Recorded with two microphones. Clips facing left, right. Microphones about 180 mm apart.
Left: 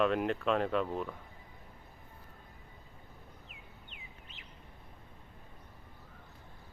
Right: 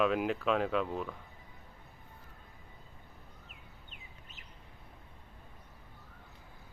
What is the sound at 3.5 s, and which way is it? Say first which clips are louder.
Bird: left 1 dB; 45° right (ahead or behind).